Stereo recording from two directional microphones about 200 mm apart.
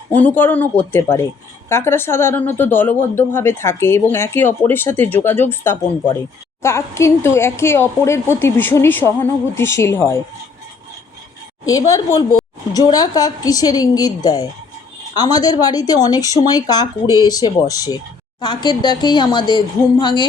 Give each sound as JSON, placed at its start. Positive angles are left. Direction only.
{"t": 0.1, "sound": "speech", "side_deg": 10}
{"t": 11.9, "sound": "speech", "side_deg": 15}